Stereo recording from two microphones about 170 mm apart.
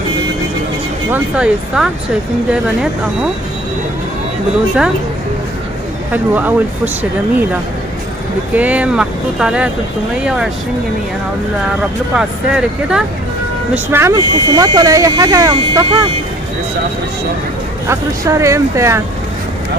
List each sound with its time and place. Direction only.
1.1 s speech: 5° right (ahead or behind)
6.1 s speech: 10° right (ahead or behind)
8.5 s speech: 10° right (ahead or behind)
12.2 s speech: 5° right (ahead or behind)
13.9 s speech: 20° right (ahead or behind)
17.8 s speech: 20° right (ahead or behind)